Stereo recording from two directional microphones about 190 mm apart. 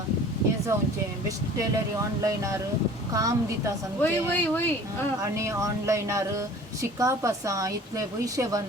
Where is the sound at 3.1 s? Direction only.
20° right (ahead or behind).